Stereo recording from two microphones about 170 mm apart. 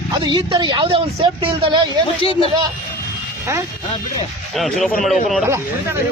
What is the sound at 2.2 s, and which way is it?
Speech, 35° left (ahead or behind).